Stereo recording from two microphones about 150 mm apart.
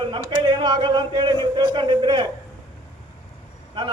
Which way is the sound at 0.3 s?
30° right (ahead or behind).